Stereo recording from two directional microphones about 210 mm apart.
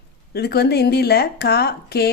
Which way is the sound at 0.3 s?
50° left (ahead or behind).